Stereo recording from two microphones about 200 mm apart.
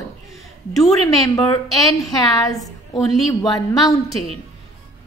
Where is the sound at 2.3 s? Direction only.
20° left (ahead or behind).